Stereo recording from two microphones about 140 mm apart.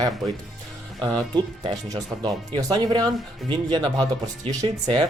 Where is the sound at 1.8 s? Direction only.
30° right (ahead or behind).